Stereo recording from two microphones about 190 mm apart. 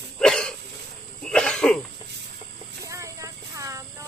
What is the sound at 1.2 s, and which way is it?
Cough, 5° left (ahead or behind).